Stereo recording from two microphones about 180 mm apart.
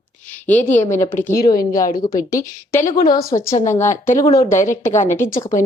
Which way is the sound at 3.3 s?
30° left (ahead or behind).